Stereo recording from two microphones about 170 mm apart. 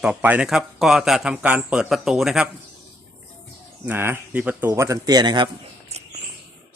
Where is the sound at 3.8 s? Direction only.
15° right (ahead or behind).